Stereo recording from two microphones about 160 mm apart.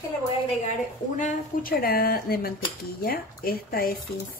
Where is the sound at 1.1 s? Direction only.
55° left (ahead or behind).